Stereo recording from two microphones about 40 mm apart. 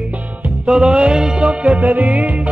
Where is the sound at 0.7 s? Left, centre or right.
Centre.